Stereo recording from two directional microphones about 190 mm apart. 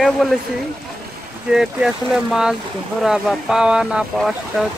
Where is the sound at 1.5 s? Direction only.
5° right (ahead or behind).